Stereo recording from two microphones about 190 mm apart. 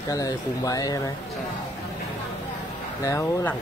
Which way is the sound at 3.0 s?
15° left (ahead or behind).